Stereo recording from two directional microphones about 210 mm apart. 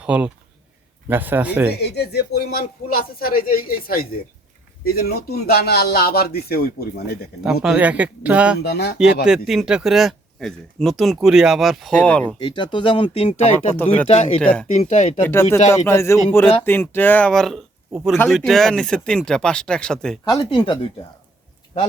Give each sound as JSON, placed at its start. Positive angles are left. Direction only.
{"t": 0.0, "sound": "speech", "side_deg": -5}
{"t": 1.7, "sound": "speech", "side_deg": 50}
{"t": 7.4, "sound": "speech", "side_deg": -5}
{"t": 8.6, "sound": "speech", "side_deg": 50}
{"t": 9.2, "sound": "speech", "side_deg": 0}
{"t": 12.4, "sound": "speech", "side_deg": 20}
{"t": 13.7, "sound": "speech", "side_deg": 10}
{"t": 14.1, "sound": "speech", "side_deg": 30}
{"t": 14.4, "sound": "speech", "side_deg": 5}
{"t": 14.7, "sound": "speech", "side_deg": 35}
{"t": 15.2, "sound": "speech", "side_deg": 10}
{"t": 20.2, "sound": "speech", "side_deg": 20}